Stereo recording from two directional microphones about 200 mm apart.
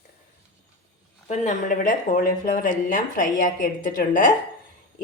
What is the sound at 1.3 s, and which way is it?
Speech, 40° left (ahead or behind).